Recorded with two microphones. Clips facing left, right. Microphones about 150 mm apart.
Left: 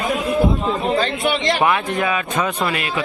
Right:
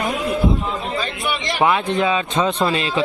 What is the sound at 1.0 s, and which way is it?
Speech, 65° left (ahead or behind).